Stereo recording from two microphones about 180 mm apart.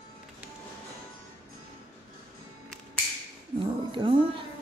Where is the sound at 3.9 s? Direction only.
30° right (ahead or behind).